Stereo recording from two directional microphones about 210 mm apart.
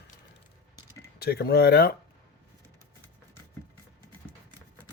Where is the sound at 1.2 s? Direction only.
50° left (ahead or behind).